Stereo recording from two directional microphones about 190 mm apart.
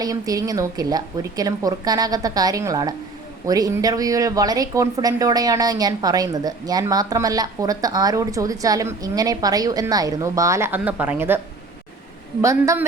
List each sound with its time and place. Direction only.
0.0 s speech: 20° right (ahead or behind)
12.4 s a woman's voice: 15° right (ahead or behind)